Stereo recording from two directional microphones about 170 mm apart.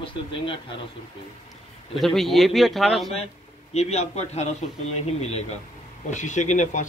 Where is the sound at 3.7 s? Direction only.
40° left (ahead or behind).